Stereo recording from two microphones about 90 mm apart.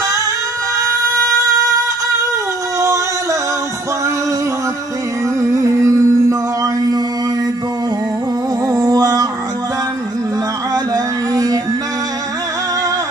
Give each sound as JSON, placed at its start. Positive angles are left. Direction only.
{"t": 5.8, "sound": "music", "side_deg": -40}
{"t": 8.6, "sound": "a sound", "side_deg": -40}
{"t": 11.3, "sound": "music", "side_deg": -40}